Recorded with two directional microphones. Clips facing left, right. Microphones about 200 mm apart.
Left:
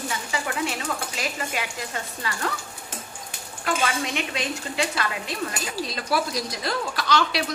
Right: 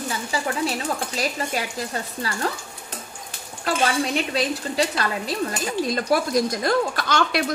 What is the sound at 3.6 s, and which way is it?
A woman's voice, 35° right (ahead or behind).